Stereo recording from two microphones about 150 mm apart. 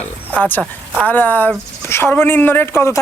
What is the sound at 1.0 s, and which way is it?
Speech, 10° left (ahead or behind).